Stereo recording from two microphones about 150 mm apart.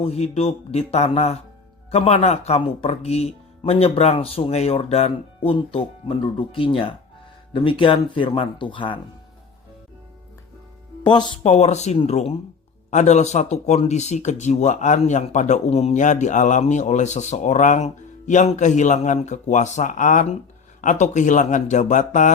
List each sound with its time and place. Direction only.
0.0 s speech: 45° left (ahead or behind)
11.0 s speech: 30° left (ahead or behind)
11.4 s speech: 45° left (ahead or behind)